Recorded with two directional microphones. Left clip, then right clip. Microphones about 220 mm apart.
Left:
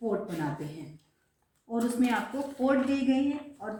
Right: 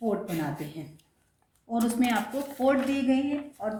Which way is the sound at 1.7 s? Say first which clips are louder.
Right 2 dB; 45° right (ahead or behind).